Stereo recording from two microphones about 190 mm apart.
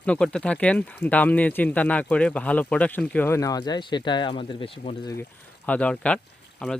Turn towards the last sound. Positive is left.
turn(degrees=5)  # may be behind; listen again after turning